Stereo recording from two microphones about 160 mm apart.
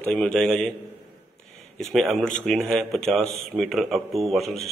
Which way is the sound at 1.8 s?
Centre (ahead or behind).